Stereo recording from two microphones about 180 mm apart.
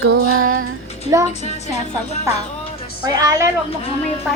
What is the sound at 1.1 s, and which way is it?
Speech, 15° right (ahead or behind).